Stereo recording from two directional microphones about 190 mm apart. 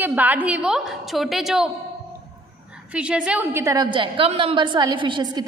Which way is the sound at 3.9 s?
25° right (ahead or behind).